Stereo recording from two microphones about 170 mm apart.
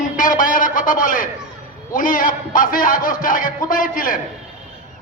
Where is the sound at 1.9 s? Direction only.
55° left (ahead or behind).